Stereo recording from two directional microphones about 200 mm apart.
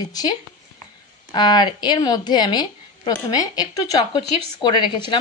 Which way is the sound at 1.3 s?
20° left (ahead or behind).